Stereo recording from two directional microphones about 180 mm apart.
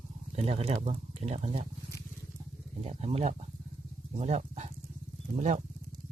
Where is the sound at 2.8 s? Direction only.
35° right (ahead or behind).